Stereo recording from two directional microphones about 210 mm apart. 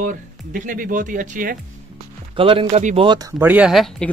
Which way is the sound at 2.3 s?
25° right (ahead or behind).